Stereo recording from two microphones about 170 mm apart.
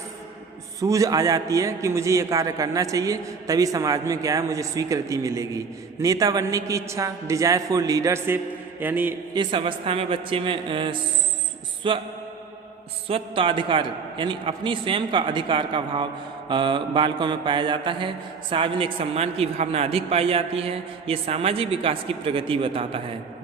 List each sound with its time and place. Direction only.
0.8 s a man's voice: 20° right (ahead or behind)
9.3 s a man's voice: 25° right (ahead or behind)
13.1 s a man's voice: 30° right (ahead or behind)